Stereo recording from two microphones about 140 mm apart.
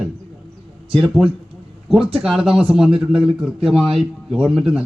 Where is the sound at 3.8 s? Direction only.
5° right (ahead or behind).